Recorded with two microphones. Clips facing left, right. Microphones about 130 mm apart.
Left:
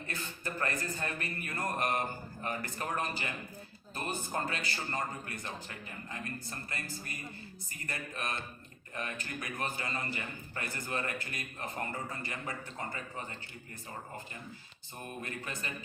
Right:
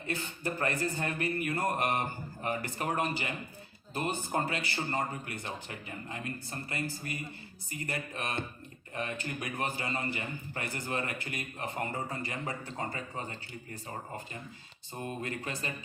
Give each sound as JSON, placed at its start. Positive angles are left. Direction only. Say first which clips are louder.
{"t": 0.1, "sound": "a man's voice", "louder": "right 6 dB", "side_deg": -25}
{"t": 14.9, "sound": "a man's voice", "louder": "right 5 dB", "side_deg": -25}